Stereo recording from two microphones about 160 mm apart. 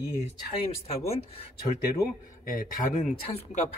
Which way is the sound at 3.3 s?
50° left (ahead or behind).